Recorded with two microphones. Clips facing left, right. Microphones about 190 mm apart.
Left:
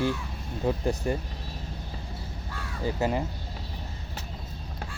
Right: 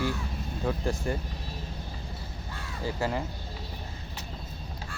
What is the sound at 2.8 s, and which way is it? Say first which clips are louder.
Speech: left 3 dB; 20° left (ahead or behind).